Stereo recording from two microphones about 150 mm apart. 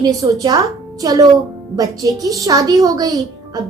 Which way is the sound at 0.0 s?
25° right (ahead or behind).